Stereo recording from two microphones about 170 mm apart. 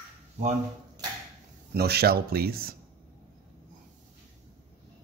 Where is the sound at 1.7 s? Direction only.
70° right (ahead or behind).